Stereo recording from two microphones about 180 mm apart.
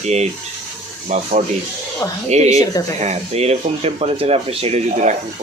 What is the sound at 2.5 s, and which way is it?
Speech, 20° left (ahead or behind).